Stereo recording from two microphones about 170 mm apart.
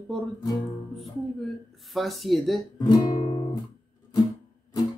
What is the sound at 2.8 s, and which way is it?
Guitar, 25° left (ahead or behind).